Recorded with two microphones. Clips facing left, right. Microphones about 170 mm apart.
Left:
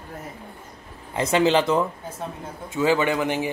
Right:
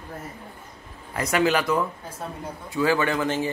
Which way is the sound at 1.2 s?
25° left (ahead or behind).